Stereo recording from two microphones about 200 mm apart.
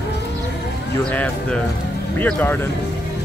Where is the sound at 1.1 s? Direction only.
5° left (ahead or behind).